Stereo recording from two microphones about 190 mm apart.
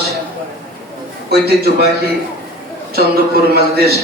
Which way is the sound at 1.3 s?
55° right (ahead or behind).